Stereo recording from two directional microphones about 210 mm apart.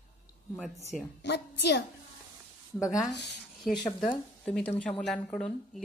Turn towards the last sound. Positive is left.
turn(degrees=5)  # may be behind; listen again after turning